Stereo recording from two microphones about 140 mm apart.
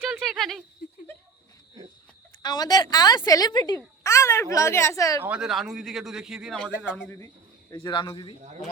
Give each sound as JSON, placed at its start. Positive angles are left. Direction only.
{"t": 0.0, "sound": "a sound", "side_deg": 0}
{"t": 2.4, "sound": "a woman's voice", "side_deg": 30}
{"t": 5.2, "sound": "a man's voice", "side_deg": -5}
{"t": 7.7, "sound": "a man's voice", "side_deg": 35}